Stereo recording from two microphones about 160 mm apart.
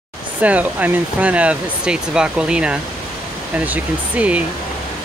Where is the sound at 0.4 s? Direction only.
10° right (ahead or behind).